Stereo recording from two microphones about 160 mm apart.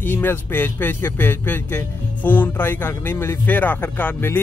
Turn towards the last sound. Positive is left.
turn(degrees=10)  # may be behind; listen again after turning